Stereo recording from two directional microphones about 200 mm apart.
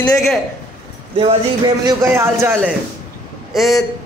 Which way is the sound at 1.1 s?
30° right (ahead or behind).